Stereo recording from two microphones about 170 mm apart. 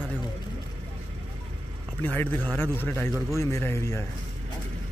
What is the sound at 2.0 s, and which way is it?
Speech, 10° left (ahead or behind).